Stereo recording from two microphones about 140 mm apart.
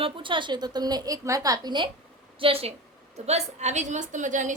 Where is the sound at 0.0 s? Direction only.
35° right (ahead or behind).